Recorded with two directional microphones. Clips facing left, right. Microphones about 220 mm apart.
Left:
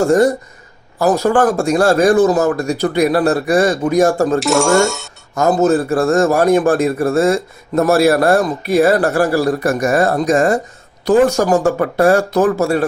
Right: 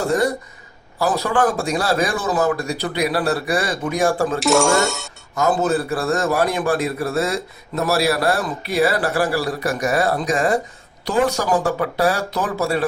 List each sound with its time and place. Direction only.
0.0 s speech: 45° left (ahead or behind)
4.4 s speech: centre (ahead or behind)
5.3 s speech: 45° left (ahead or behind)